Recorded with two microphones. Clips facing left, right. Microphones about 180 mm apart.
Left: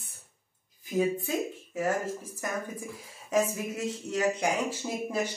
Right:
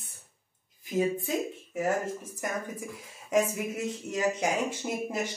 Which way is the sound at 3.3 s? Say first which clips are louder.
Right 1 dB; 15° right (ahead or behind).